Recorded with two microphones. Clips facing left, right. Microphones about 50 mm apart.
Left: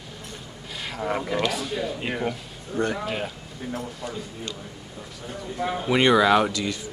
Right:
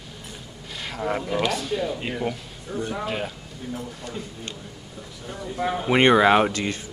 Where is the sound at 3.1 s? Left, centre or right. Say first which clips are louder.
Right 1 dB; centre.